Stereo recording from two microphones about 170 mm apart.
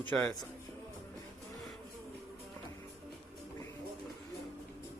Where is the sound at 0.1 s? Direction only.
5° left (ahead or behind).